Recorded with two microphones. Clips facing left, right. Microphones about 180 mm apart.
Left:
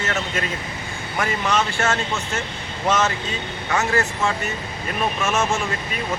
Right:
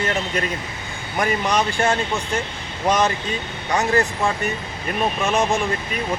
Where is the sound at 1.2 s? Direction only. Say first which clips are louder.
Right 2 dB; 15° right (ahead or behind).